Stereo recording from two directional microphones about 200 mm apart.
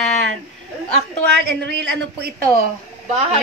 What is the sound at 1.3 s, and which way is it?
A woman's voice, 55° right (ahead or behind).